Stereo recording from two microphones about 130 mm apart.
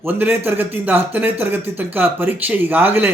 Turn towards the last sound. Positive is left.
turn(degrees=-15)  # may be behind; listen again after turning